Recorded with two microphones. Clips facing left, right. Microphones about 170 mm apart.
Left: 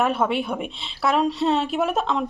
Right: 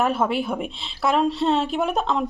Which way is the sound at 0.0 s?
Centre (ahead or behind).